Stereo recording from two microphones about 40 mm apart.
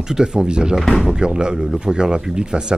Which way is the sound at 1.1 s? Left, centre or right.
Right.